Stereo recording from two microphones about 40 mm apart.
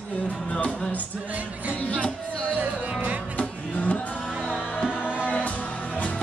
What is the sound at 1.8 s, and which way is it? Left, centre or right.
Music, left.